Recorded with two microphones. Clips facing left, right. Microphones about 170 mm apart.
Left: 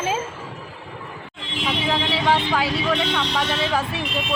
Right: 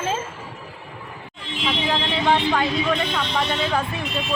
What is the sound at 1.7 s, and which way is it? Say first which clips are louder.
Speech: left 1 dB; 5° left (ahead or behind).